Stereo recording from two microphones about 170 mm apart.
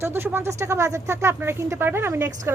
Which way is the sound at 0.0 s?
15° right (ahead or behind).